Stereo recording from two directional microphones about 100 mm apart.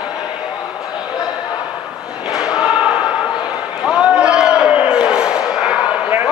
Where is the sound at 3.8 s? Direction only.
10° right (ahead or behind).